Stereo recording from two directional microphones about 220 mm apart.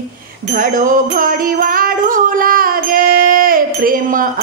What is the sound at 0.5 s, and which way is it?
Music, 35° right (ahead or behind).